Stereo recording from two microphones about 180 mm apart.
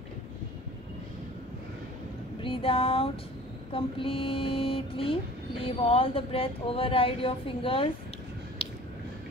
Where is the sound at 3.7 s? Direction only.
30° left (ahead or behind).